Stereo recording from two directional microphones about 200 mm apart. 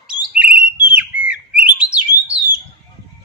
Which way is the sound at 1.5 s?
45° right (ahead or behind).